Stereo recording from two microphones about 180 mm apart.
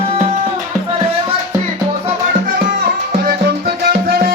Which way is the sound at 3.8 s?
60° right (ahead or behind).